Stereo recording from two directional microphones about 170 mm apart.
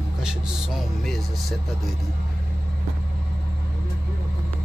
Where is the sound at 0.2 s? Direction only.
5° right (ahead or behind).